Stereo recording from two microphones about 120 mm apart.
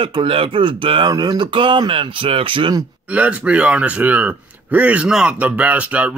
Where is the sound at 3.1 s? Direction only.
10° right (ahead or behind).